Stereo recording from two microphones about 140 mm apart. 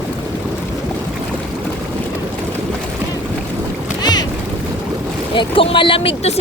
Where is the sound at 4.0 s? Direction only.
30° left (ahead or behind).